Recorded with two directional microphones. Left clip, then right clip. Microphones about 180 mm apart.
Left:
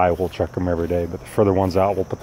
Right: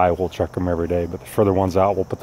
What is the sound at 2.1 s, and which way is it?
Speech, 20° right (ahead or behind).